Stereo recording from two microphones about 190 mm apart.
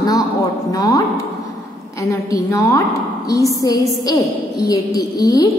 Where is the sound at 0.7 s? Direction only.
20° left (ahead or behind).